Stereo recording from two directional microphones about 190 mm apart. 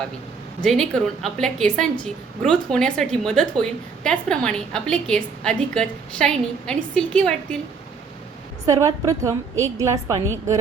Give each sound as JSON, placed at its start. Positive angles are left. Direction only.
{"t": 0.6, "sound": "a woman's voice", "side_deg": 5}
{"t": 8.6, "sound": "a woman's voice", "side_deg": -15}